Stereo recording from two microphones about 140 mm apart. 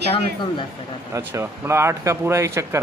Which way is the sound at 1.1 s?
20° right (ahead or behind).